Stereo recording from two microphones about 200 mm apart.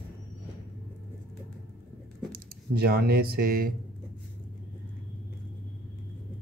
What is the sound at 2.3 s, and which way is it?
Speech, 50° right (ahead or behind).